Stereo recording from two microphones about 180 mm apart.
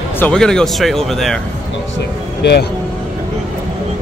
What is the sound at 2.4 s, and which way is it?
Speech, 65° left (ahead or behind).